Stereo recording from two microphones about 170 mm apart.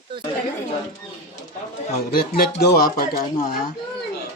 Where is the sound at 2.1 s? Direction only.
60° left (ahead or behind).